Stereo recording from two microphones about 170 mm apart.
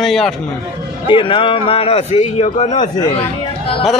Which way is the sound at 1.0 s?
30° left (ahead or behind).